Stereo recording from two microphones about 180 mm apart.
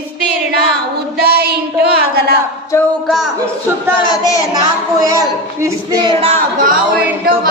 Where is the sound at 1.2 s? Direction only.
60° right (ahead or behind).